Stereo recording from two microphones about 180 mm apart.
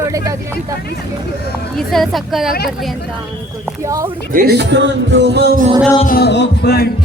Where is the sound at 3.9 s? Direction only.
20° right (ahead or behind).